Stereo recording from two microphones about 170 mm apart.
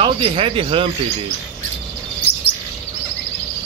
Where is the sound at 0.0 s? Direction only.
30° right (ahead or behind).